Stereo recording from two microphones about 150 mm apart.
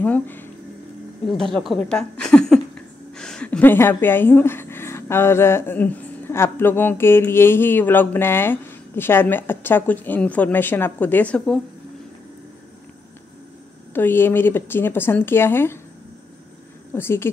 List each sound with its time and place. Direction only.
0.0 s a woman's voice: 10° left (ahead or behind)
13.9 s a woman's voice: 15° left (ahead or behind)
16.9 s a woman's voice: 15° left (ahead or behind)